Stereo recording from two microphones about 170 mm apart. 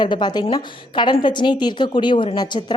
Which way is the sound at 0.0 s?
25° left (ahead or behind).